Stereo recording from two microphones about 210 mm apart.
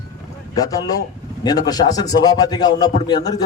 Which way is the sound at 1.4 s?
20° left (ahead or behind).